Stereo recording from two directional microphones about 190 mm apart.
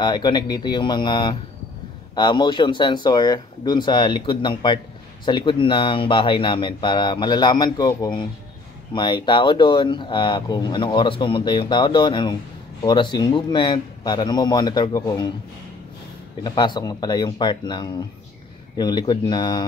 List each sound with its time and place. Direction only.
0.0 s speech: 25° left (ahead or behind)
16.4 s speech: 20° left (ahead or behind)